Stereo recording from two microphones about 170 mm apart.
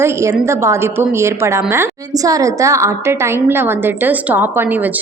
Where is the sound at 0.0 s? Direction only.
15° right (ahead or behind).